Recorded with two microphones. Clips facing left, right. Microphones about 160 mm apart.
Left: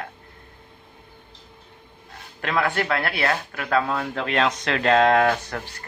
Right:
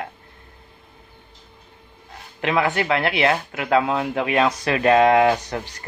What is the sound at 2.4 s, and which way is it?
A man's voice, 15° right (ahead or behind).